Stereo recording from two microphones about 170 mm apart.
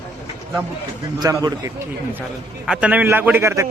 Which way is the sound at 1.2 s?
20° right (ahead or behind).